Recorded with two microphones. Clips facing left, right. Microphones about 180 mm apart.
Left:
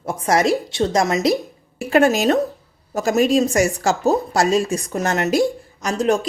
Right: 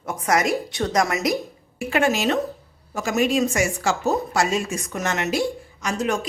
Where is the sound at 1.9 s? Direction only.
40° left (ahead or behind).